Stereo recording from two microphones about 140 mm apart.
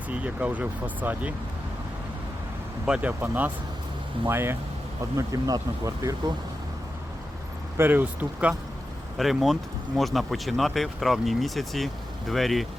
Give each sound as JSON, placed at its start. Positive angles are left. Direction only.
{"t": 0.1, "sound": "speech", "side_deg": -10}
{"t": 2.8, "sound": "speech", "side_deg": -10}
{"t": 7.8, "sound": "speech", "side_deg": -15}
{"t": 9.1, "sound": "speech", "side_deg": 0}